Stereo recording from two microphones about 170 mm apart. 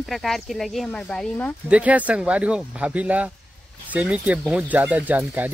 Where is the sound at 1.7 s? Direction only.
10° right (ahead or behind).